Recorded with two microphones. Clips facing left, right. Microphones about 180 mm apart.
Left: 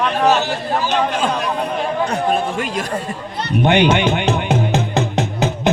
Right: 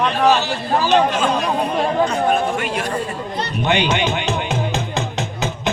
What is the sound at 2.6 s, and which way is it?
Speech, 40° left (ahead or behind).